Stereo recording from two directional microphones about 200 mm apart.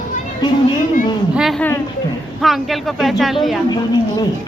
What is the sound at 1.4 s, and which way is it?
Speech, centre (ahead or behind).